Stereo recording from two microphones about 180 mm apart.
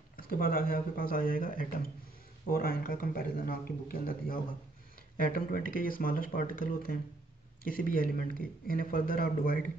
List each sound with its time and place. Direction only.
0.1 s speech: 55° left (ahead or behind)